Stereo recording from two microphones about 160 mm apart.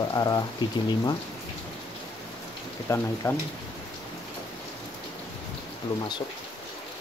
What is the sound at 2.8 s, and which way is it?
Speech, 15° left (ahead or behind).